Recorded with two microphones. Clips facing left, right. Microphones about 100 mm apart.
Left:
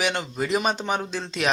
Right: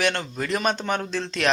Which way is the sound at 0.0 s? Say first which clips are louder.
Right 1 dB; 10° left (ahead or behind).